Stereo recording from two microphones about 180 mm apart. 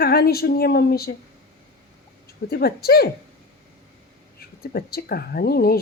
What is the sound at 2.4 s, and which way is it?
Speech, 55° left (ahead or behind).